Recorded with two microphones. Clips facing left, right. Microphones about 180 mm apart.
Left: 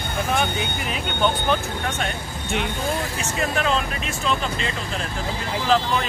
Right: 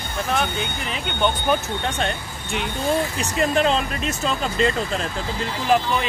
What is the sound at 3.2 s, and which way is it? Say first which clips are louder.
Speech: right 4 dB; 35° right (ahead or behind).